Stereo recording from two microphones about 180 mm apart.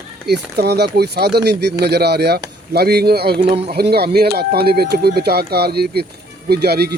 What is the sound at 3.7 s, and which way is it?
Speech, 60° right (ahead or behind).